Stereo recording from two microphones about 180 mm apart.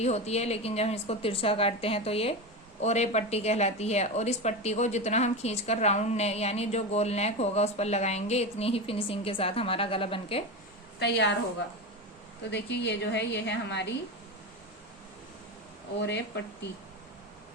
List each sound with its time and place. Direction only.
0.0 s a woman's voice: 35° left (ahead or behind)
11.0 s a woman's voice: 70° left (ahead or behind)
12.5 s a woman's voice: 70° left (ahead or behind)
16.0 s a woman's voice: 75° left (ahead or behind)